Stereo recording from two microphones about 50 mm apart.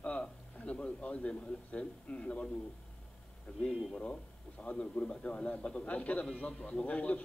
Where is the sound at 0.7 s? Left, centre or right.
Left.